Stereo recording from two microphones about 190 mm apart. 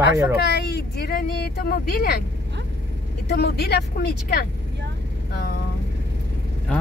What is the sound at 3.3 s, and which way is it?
Speech, 60° left (ahead or behind).